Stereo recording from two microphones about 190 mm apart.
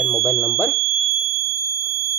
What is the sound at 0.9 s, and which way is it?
Fire alarm, 15° right (ahead or behind).